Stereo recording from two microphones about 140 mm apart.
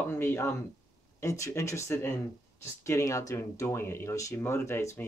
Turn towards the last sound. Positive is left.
turn(degrees=20)  # may be behind; listen again after turning